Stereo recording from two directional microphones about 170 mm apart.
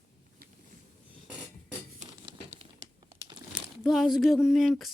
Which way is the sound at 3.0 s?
30° right (ahead or behind).